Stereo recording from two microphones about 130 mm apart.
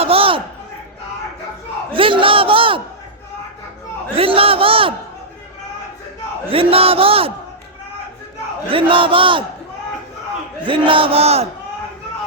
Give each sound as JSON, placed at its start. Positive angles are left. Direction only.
{"t": 0.0, "sound": "a sound", "side_deg": -45}
{"t": 1.9, "sound": "a man's voice", "side_deg": -40}
{"t": 4.1, "sound": "a man's voice", "side_deg": -45}
{"t": 6.5, "sound": "a man's voice", "side_deg": -45}
{"t": 8.7, "sound": "speech", "side_deg": -45}
{"t": 10.7, "sound": "a man's voice", "side_deg": -40}